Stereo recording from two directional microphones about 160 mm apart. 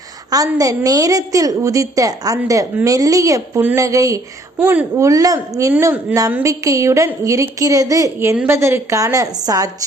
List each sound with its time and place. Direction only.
0.3 s a woman's voice: 20° right (ahead or behind)